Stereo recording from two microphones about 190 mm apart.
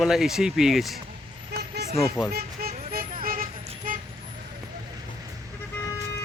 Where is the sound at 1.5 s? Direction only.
60° right (ahead or behind).